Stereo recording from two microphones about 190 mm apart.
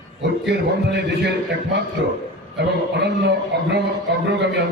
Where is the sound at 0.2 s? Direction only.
65° right (ahead or behind).